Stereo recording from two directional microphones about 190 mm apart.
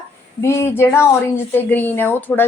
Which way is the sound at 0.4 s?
15° left (ahead or behind).